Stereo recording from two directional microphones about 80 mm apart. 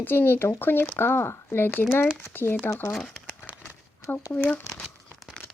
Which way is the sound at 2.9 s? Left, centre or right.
Centre.